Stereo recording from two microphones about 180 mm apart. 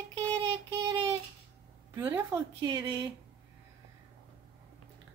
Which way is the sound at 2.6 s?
25° right (ahead or behind).